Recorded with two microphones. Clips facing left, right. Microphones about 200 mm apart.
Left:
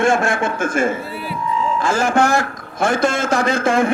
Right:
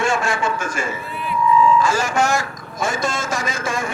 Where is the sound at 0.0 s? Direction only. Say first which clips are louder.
Left 4 dB; 55° left (ahead or behind).